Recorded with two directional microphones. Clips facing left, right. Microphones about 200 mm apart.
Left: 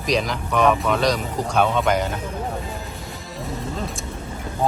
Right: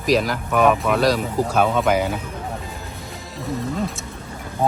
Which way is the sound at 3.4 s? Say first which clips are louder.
Right 4 dB; centre (ahead or behind).